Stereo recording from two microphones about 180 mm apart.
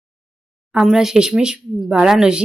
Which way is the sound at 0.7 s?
Centre (ahead or behind).